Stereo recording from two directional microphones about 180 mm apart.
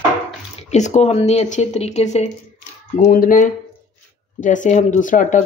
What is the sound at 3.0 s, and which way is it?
Speech, 50° left (ahead or behind).